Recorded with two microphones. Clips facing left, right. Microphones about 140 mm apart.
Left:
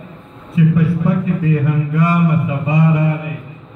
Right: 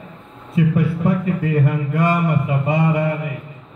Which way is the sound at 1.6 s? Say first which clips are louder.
Left 2 dB; 55° right (ahead or behind).